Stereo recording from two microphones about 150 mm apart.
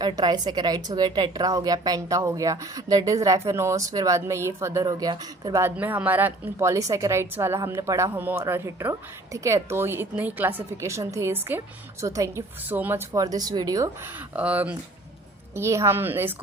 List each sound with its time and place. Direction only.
0.0 s a woman's voice: 25° right (ahead or behind)
5.7 s a woman's voice: 10° right (ahead or behind)